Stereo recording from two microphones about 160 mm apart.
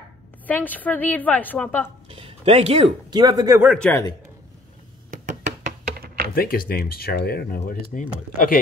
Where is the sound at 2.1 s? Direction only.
35° right (ahead or behind).